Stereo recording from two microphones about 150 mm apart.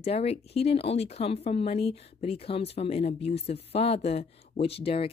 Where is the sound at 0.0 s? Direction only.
45° left (ahead or behind).